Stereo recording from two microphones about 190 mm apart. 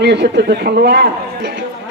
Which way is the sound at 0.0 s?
60° right (ahead or behind).